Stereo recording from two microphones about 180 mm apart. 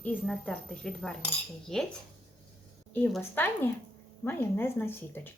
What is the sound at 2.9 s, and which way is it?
A woman's voice, 10° left (ahead or behind).